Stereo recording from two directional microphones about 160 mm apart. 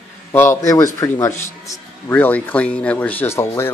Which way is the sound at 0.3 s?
15° left (ahead or behind).